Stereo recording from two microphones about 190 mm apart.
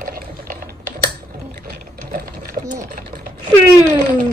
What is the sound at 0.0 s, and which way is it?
Typing, 50° right (ahead or behind).